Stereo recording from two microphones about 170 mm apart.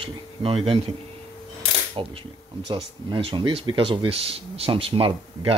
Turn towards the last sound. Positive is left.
turn(degrees=-35)  # may be behind; listen again after turning